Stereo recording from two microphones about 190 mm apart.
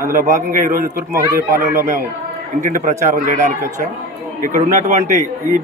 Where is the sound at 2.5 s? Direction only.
40° right (ahead or behind).